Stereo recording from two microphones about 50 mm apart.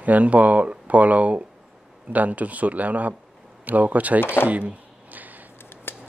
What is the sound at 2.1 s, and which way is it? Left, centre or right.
Speech, right.